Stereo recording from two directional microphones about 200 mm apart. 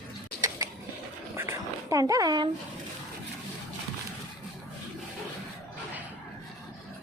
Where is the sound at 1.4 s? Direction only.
15° right (ahead or behind).